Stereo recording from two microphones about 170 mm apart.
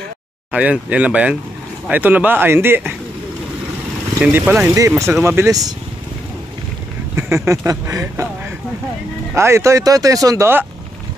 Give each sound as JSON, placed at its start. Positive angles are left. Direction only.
{"t": 0.5, "sound": "speech", "side_deg": -10}
{"t": 4.2, "sound": "speech", "side_deg": -10}
{"t": 7.2, "sound": "speech", "side_deg": -15}
{"t": 9.3, "sound": "speech", "side_deg": -15}